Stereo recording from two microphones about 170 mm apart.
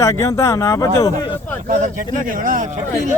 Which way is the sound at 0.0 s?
15° left (ahead or behind).